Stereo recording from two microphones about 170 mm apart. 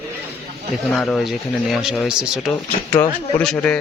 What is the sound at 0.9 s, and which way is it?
Speech, 5° left (ahead or behind).